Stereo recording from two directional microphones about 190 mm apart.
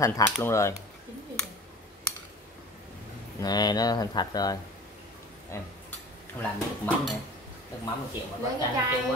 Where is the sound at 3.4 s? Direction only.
20° left (ahead or behind).